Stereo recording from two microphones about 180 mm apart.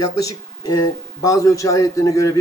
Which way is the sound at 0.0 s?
20° left (ahead or behind).